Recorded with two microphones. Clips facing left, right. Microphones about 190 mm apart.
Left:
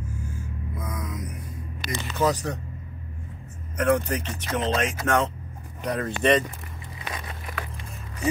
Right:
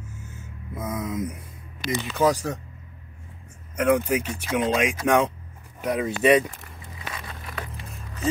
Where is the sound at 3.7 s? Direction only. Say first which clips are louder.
Right 2 dB; 10° right (ahead or behind).